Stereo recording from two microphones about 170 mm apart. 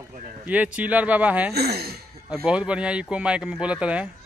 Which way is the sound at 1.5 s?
70° right (ahead or behind).